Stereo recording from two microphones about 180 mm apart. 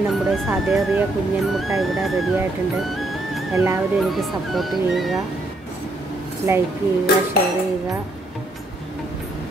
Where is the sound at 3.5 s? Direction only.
15° right (ahead or behind).